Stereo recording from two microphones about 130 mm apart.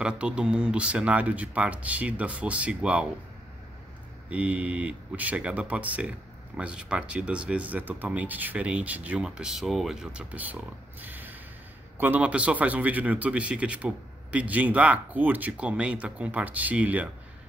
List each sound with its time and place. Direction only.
0.0 s speech: 5° right (ahead or behind)
4.3 s speech: 10° right (ahead or behind)